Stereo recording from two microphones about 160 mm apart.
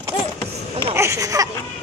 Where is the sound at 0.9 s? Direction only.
15° right (ahead or behind).